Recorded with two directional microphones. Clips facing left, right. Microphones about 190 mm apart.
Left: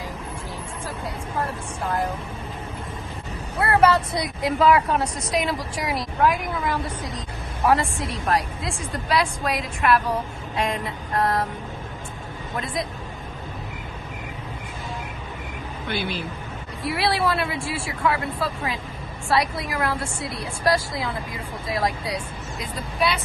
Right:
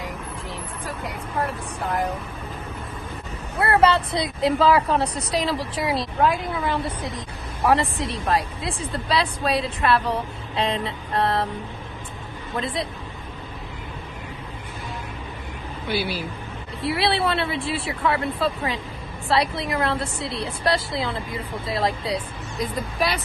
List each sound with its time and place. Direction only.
3.6 s speech: 25° right (ahead or behind)
12.5 s speech: 25° right (ahead or behind)
15.9 s speech: 10° right (ahead or behind)
16.8 s speech: 25° right (ahead or behind)